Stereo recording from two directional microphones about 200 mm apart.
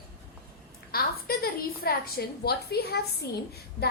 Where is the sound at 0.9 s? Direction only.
50° left (ahead or behind).